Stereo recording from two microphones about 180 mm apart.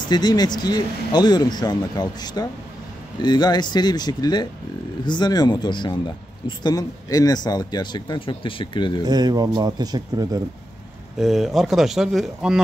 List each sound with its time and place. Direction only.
0.1 s speech: 25° left (ahead or behind)
9.0 s speech: 20° right (ahead or behind)
11.1 s speech: centre (ahead or behind)